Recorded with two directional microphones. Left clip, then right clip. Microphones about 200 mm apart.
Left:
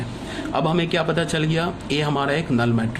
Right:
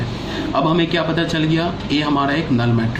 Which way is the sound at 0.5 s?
45° left (ahead or behind).